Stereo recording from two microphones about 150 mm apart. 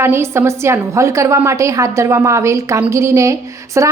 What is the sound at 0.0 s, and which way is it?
A woman's voice, 15° right (ahead or behind).